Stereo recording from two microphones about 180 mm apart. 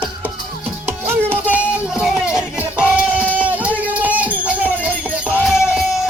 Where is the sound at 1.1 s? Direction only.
10° right (ahead or behind).